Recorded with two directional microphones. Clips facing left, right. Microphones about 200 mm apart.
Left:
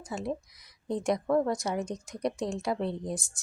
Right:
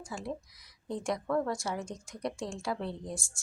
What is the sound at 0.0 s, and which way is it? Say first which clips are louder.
Speech: left 5 dB; 20° left (ahead or behind).